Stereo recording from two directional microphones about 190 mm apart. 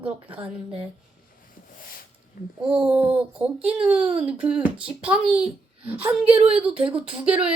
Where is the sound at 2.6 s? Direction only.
5° right (ahead or behind).